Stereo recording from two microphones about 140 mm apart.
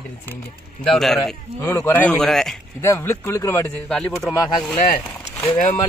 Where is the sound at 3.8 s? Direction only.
5° left (ahead or behind).